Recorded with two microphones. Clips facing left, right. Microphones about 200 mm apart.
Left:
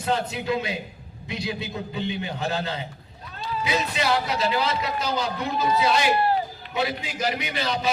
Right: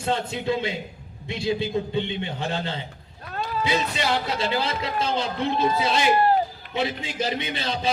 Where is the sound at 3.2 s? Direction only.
60° right (ahead or behind).